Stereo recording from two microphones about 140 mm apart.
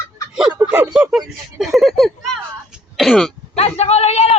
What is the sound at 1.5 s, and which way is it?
Speech, 5° right (ahead or behind).